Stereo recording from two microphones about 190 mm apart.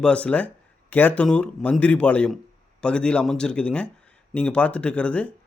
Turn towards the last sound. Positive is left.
turn(degrees=5)  # may be behind; listen again after turning